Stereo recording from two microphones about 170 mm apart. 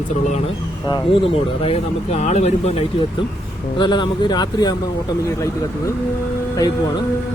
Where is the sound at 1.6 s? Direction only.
40° left (ahead or behind).